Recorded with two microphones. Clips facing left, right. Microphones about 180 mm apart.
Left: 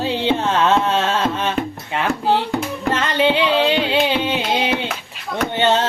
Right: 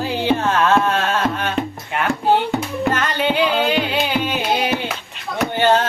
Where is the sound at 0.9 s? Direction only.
25° left (ahead or behind).